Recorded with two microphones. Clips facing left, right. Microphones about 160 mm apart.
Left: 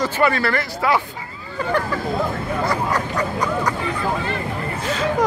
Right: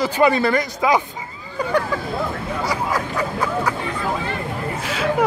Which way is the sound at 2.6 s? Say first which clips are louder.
Even; 5° right (ahead or behind).